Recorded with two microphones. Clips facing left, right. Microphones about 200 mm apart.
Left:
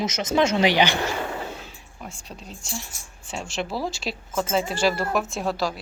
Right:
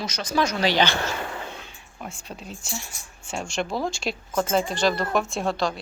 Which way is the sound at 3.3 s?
Centre (ahead or behind).